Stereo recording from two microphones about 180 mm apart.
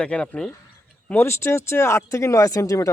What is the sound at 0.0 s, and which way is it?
Speech, 5° left (ahead or behind).